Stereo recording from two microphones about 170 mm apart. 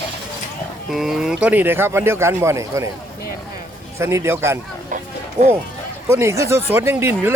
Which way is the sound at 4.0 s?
15° right (ahead or behind).